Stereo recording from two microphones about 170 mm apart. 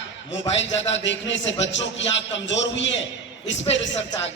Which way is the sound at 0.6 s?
90° left.